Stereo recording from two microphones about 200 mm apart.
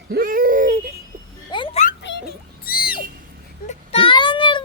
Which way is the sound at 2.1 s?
65° left (ahead or behind).